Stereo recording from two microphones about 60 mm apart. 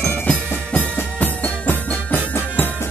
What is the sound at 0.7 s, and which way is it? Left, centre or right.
Music, left.